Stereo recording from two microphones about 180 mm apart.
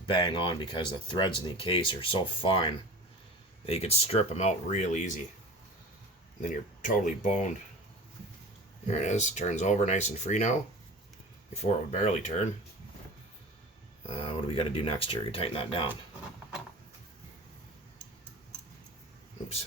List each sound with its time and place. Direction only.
0.1 s speech: 25° left (ahead or behind); by 5.2 s 45° left (ahead or behind)
6.4 s speech: 45° left (ahead or behind)
8.9 s speech: 40° left (ahead or behind)
14.1 s speech: 30° left (ahead or behind)